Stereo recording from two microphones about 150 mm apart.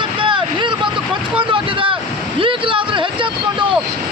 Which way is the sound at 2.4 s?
35° right (ahead or behind).